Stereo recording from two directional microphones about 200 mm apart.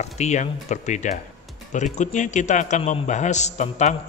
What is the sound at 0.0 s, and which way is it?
A man's voice, 35° left (ahead or behind).